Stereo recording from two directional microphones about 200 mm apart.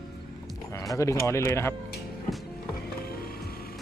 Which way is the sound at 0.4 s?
15° left (ahead or behind).